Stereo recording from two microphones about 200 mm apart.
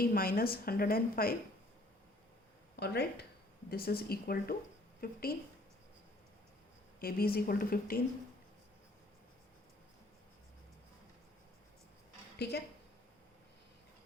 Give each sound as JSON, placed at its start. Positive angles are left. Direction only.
{"t": 0.0, "sound": "a woman's voice", "side_deg": 50}
{"t": 2.7, "sound": "a woman's voice", "side_deg": 55}
{"t": 7.0, "sound": "a woman's voice", "side_deg": 50}
{"t": 12.4, "sound": "a woman's voice", "side_deg": 55}